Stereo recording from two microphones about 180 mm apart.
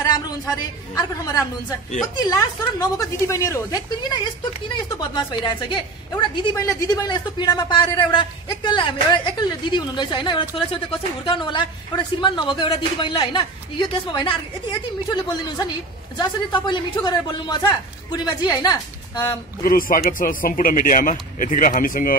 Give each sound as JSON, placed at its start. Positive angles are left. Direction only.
{"t": 0.6, "sound": "speech", "side_deg": 20}
{"t": 19.6, "sound": "speech", "side_deg": 55}